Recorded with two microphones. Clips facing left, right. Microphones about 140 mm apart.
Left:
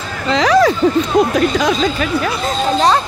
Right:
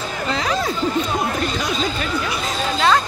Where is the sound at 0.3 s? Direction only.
90° left.